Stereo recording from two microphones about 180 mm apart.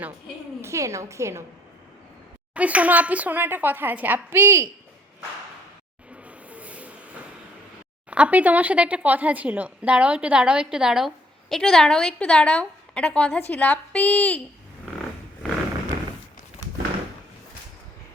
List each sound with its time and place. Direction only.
0.6 s speech: 15° right (ahead or behind)
2.6 s speech: 10° right (ahead or behind)
6.2 s a sound: 5° right (ahead or behind)
8.1 s a woman's voice: 5° right (ahead or behind)